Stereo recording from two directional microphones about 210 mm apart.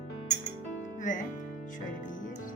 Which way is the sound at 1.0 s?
40° left (ahead or behind).